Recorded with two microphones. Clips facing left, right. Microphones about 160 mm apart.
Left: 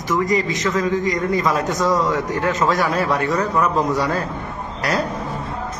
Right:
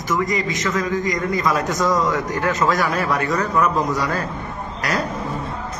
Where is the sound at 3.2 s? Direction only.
5° left (ahead or behind).